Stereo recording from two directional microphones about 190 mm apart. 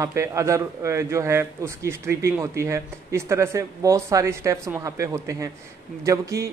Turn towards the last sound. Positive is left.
turn(degrees=-15)  # may be behind; listen again after turning